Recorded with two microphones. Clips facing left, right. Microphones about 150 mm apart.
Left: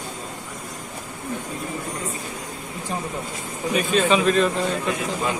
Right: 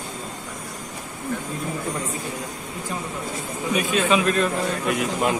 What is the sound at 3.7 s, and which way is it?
Speech, 5° right (ahead or behind).